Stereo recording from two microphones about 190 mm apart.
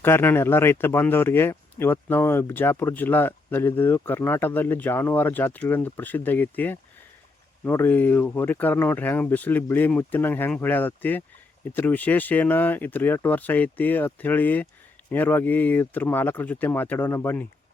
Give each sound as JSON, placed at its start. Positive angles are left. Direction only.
{"t": 0.0, "sound": "speech", "side_deg": 10}